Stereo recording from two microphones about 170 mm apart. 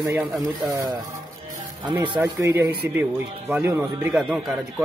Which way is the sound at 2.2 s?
15° right (ahead or behind).